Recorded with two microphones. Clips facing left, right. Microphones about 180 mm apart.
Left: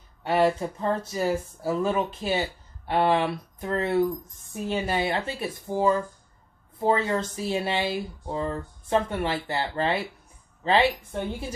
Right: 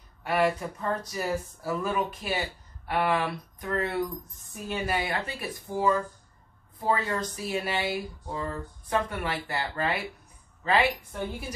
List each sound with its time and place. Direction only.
0.2 s speech: 25° left (ahead or behind)